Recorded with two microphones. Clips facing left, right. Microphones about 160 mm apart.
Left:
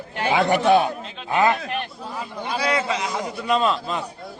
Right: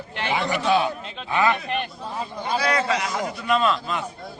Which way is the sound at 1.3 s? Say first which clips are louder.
Left 2 dB; 40° left (ahead or behind).